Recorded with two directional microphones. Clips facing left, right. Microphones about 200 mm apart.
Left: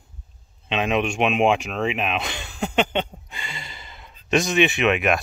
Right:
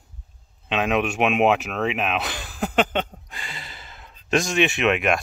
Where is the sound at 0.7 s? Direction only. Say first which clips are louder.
Even; centre (ahead or behind).